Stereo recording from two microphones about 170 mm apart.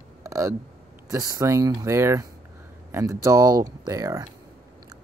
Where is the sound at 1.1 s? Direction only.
20° right (ahead or behind).